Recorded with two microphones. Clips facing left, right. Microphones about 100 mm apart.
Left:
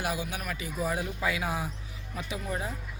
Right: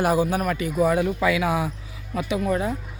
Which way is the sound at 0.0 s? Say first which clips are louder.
Right 12 dB; 45° right (ahead or behind).